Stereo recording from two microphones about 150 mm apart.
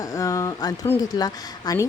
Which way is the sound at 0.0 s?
25° left (ahead or behind).